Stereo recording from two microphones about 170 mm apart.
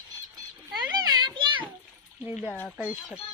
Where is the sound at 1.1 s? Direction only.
25° right (ahead or behind).